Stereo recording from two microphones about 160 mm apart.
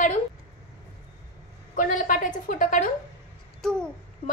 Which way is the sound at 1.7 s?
55° left (ahead or behind).